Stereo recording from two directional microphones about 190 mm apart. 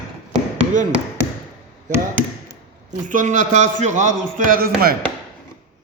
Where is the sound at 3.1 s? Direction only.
40° right (ahead or behind).